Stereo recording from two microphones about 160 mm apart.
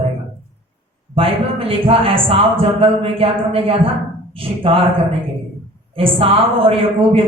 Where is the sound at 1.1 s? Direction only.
35° right (ahead or behind).